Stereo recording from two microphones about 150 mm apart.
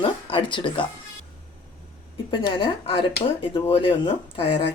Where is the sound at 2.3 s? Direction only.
35° left (ahead or behind).